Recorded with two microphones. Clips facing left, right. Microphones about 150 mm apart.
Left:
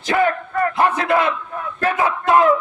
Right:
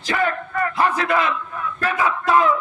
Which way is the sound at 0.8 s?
25° left (ahead or behind).